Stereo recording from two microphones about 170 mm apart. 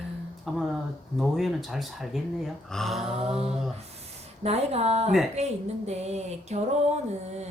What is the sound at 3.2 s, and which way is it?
A woman's voice, 35° right (ahead or behind).